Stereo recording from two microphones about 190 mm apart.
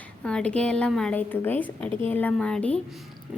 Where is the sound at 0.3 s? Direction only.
5° left (ahead or behind).